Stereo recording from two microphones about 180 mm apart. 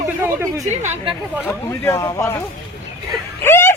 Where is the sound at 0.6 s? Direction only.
40° right (ahead or behind).